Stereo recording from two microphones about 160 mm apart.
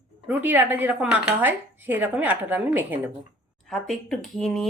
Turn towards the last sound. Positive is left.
turn(degrees=0)  # may be behind; listen again after turning